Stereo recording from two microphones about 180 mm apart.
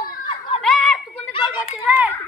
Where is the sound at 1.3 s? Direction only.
25° left (ahead or behind).